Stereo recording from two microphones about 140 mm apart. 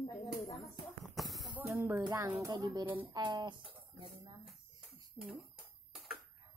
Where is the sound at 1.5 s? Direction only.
15° right (ahead or behind); by 3.6 s 35° right (ahead or behind).